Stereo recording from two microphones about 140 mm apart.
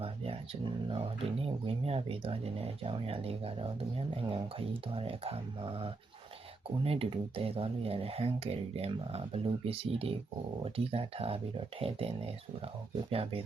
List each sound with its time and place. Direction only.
0.9 s speech: 40° right (ahead or behind)